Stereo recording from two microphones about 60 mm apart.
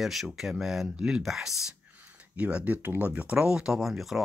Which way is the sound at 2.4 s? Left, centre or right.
Right.